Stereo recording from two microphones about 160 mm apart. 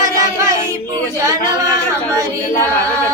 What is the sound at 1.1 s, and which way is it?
Speech, 20° right (ahead or behind).